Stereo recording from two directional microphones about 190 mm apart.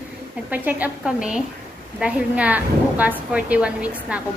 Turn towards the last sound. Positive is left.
turn(degrees=-5)  # may be behind; listen again after turning